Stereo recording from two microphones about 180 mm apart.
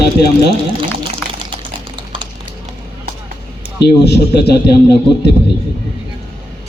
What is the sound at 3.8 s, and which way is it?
Speech, 70° left (ahead or behind).